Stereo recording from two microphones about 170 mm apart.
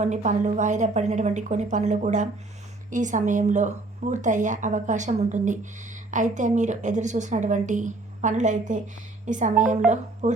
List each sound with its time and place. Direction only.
0.0 s speech: 45° right (ahead or behind)